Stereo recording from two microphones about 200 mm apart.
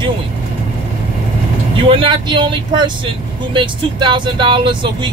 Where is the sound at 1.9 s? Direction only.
25° right (ahead or behind).